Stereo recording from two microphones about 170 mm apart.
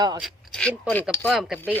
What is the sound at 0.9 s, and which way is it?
Speech, 10° left (ahead or behind).